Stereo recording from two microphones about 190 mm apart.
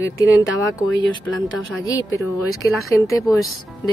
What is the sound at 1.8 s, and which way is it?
A woman's voice, 15° left (ahead or behind).